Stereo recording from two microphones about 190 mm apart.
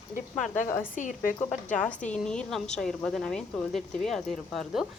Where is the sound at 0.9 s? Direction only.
45° left (ahead or behind).